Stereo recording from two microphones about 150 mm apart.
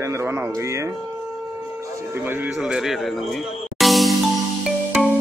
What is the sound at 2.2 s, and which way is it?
Speech, 15° right (ahead or behind).